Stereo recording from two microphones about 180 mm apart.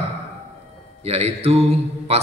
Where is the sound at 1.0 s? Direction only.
35° right (ahead or behind).